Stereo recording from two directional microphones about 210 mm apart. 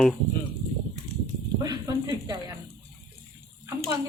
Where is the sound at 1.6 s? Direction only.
15° right (ahead or behind).